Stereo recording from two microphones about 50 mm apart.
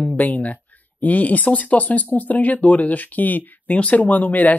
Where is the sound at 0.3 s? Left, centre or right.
Left.